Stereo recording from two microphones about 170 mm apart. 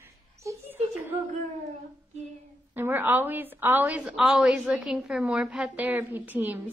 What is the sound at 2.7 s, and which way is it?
A woman's voice, 10° right (ahead or behind).